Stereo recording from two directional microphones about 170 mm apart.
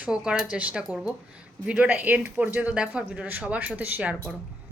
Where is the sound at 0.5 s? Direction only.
5° right (ahead or behind).